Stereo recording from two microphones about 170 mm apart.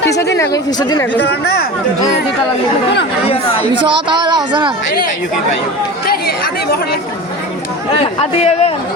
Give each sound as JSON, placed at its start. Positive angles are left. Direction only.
{"t": 0.3, "sound": "speech", "side_deg": 20}
{"t": 3.2, "sound": "a man's voice", "side_deg": 35}
{"t": 3.8, "sound": "speech", "side_deg": -25}
{"t": 6.1, "sound": "speech", "side_deg": 65}
{"t": 7.9, "sound": "a man's voice", "side_deg": 35}